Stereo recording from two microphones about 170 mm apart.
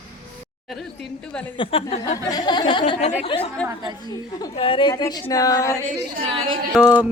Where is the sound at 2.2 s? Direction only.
25° left (ahead or behind).